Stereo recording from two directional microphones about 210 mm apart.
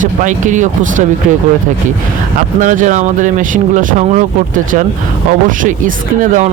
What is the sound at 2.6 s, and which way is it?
Speech, 35° right (ahead or behind).